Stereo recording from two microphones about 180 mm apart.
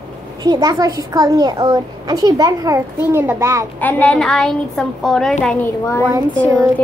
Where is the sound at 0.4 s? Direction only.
20° right (ahead or behind).